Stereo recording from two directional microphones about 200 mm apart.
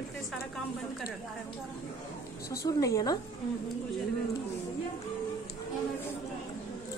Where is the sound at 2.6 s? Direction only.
15° left (ahead or behind).